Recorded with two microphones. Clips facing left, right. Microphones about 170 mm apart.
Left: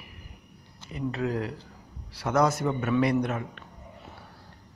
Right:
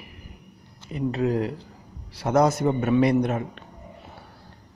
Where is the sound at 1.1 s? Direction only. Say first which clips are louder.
Right 5 dB; 25° right (ahead or behind).